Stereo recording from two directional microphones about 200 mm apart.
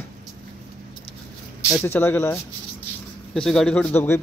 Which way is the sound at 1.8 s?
10° left (ahead or behind).